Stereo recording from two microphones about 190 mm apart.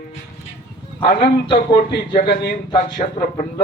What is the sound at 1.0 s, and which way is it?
Speech, 25° left (ahead or behind).